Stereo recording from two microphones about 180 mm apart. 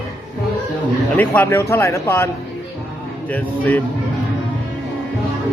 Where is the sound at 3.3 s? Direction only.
10° left (ahead or behind).